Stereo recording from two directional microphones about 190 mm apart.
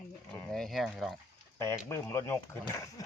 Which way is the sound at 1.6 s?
15° left (ahead or behind).